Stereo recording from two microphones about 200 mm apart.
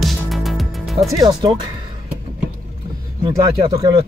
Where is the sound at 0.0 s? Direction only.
Centre (ahead or behind).